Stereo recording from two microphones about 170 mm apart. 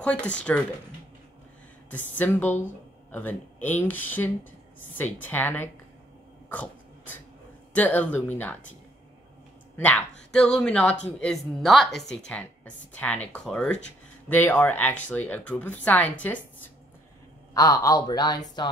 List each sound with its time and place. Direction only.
0.0 s speech: 5° left (ahead or behind)
1.9 s speech: 10° left (ahead or behind)
6.5 s dog: 10° left (ahead or behind)
7.7 s speech: 10° left (ahead or behind)
9.8 s speech: 10° left (ahead or behind)
17.6 s speech: 20° left (ahead or behind)